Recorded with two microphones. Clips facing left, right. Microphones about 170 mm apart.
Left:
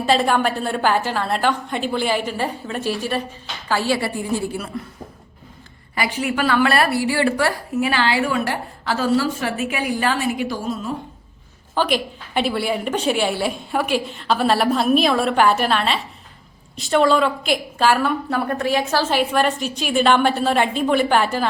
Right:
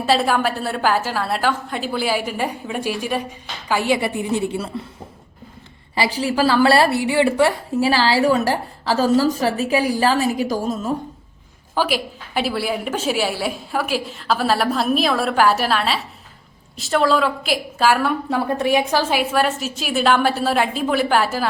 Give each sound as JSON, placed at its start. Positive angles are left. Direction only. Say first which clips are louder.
{"t": 0.0, "sound": "a woman's voice", "louder": "even", "side_deg": -5}
{"t": 5.9, "sound": "a woman's voice", "louder": "right 2 dB", "side_deg": -30}
{"t": 11.7, "sound": "a woman's voice", "louder": "left 1 dB", "side_deg": -10}
{"t": 18.4, "sound": "a woman's voice", "louder": "right 4 dB", "side_deg": -20}